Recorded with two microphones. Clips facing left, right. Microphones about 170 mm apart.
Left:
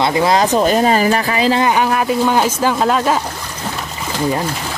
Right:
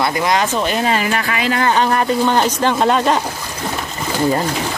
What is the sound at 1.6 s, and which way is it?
Speech, 10° left (ahead or behind).